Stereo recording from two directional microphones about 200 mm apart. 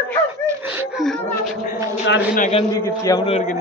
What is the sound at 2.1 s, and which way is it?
Speech, 50° left (ahead or behind).